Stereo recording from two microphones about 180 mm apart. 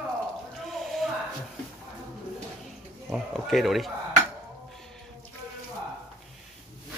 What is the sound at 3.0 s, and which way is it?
Speech, centre (ahead or behind).